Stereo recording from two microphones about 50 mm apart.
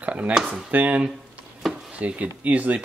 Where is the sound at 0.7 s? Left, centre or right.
Right.